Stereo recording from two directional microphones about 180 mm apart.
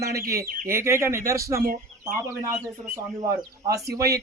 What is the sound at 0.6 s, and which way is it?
Speech, 15° right (ahead or behind).